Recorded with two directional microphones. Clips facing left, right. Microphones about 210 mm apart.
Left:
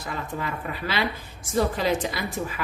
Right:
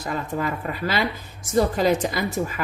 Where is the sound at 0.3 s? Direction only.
45° right (ahead or behind).